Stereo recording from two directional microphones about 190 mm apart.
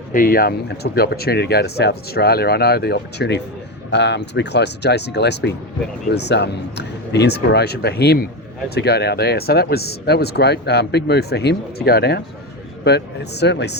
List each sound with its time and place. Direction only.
0.1 s speech: 50° left (ahead or behind)